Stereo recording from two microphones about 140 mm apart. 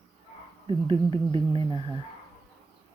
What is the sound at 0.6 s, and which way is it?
Speech, 40° right (ahead or behind).